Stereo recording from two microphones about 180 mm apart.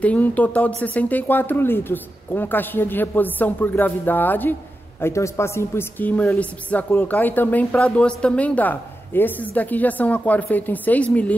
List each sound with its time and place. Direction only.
0.0 s a woman's voice: 10° left (ahead or behind)